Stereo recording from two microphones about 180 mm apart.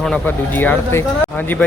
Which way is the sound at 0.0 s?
5° left (ahead or behind).